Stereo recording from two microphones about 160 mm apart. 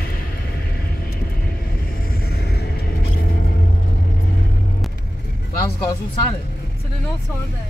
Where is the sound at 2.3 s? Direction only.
90° left.